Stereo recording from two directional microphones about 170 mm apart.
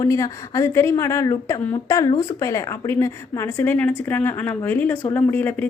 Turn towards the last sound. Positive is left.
turn(degrees=10)  # may be behind; listen again after turning